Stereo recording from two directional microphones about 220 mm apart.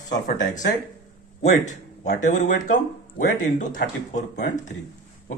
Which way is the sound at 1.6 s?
35° left (ahead or behind).